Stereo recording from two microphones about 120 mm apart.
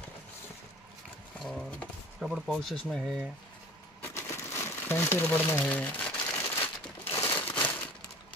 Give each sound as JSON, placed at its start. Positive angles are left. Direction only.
{"t": 1.4, "sound": "speech", "side_deg": 0}
{"t": 4.0, "sound": "crumpling", "side_deg": 20}